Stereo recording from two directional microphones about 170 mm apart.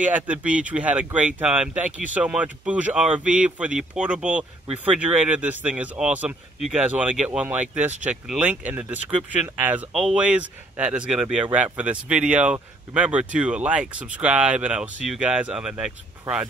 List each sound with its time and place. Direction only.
0.0 s speech: 10° right (ahead or behind)